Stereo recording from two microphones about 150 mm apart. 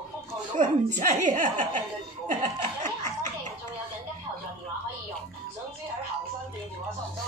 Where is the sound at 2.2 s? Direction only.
55° right (ahead or behind).